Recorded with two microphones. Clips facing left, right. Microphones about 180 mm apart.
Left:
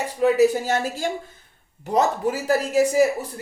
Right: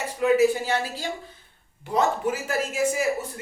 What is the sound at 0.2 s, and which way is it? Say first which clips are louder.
Speech: left 2 dB; 40° left (ahead or behind).